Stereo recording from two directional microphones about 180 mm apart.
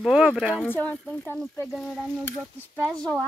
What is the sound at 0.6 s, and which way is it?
Speech, 10° left (ahead or behind).